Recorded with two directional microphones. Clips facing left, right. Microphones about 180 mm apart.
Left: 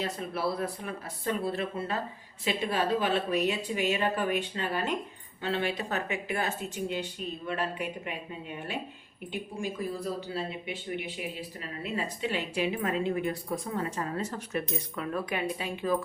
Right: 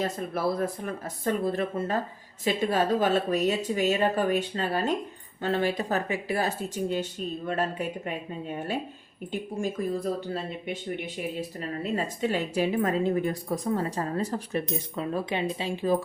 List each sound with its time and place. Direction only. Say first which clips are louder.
0.0 s a woman's voice: right 4 dB; 45° right (ahead or behind)